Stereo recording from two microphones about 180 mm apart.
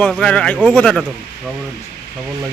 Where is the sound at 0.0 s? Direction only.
5° left (ahead or behind).